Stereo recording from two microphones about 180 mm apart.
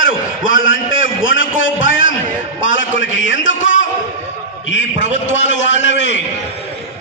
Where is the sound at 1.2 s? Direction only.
90° left.